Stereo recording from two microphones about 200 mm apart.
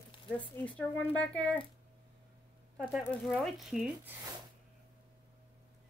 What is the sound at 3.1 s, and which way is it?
Speech, 5° left (ahead or behind).